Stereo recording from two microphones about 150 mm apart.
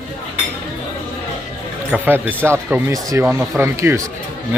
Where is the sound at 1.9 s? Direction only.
10° right (ahead or behind).